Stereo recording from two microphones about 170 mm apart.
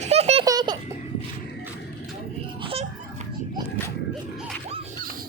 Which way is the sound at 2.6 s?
35° right (ahead or behind).